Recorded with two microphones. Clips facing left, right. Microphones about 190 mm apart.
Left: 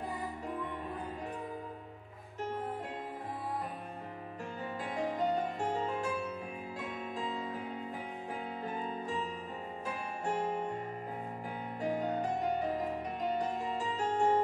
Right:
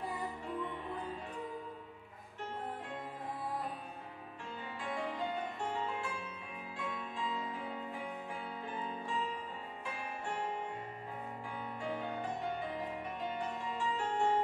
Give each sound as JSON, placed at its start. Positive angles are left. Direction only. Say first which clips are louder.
{"t": 4.8, "sound": "music", "louder": "left 5 dB", "side_deg": 40}
{"t": 7.2, "sound": "music", "louder": "left 2 dB", "side_deg": 40}
{"t": 8.6, "sound": "music", "louder": "left 3 dB", "side_deg": 40}
{"t": 11.8, "sound": "music", "louder": "left 7 dB", "side_deg": 40}